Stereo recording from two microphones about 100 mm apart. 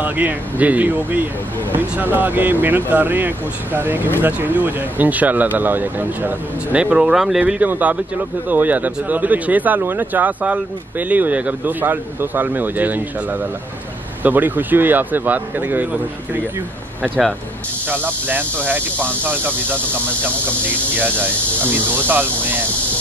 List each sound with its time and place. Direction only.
0.0 s speech: 15° right (ahead or behind)
17.8 s speech: 20° right (ahead or behind)
21.9 s speech: 20° right (ahead or behind)